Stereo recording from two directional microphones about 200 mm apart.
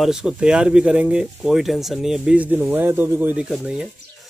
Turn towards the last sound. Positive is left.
turn(degrees=-5)  # may be behind; listen again after turning